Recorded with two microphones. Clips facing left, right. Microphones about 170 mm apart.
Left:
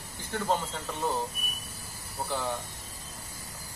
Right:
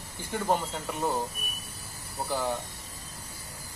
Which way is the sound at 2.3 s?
15° right (ahead or behind).